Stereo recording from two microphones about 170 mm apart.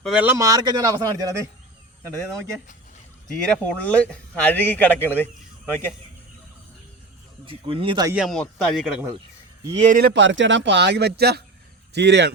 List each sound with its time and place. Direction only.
0.0 s speech: 5° right (ahead or behind)
3.3 s speech: 5° left (ahead or behind)
7.4 s speech: 30° right (ahead or behind)
8.1 s speech: centre (ahead or behind)
9.8 s a man's voice: 50° right (ahead or behind)
10.2 s speech: 90° right; by 11.4 s 70° right (ahead or behind)
11.9 s speech: 90° right